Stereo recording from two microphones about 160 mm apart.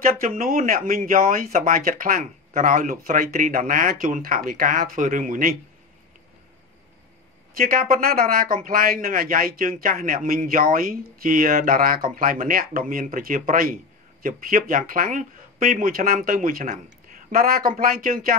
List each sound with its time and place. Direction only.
0.0 s speech: 60° right (ahead or behind)
7.5 s speech: 60° right (ahead or behind)